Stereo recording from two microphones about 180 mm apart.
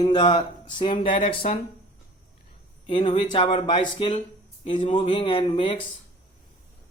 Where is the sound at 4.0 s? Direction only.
40° left (ahead or behind).